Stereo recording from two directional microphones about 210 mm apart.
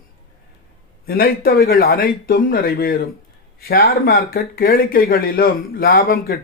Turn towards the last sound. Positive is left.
turn(degrees=45)  # may be behind; listen again after turning